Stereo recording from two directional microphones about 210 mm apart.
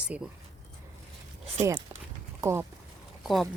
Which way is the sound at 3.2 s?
Centre (ahead or behind).